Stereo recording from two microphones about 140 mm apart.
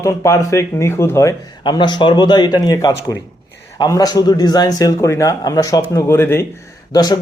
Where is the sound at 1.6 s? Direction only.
30° left (ahead or behind); by 6.5 s 15° left (ahead or behind).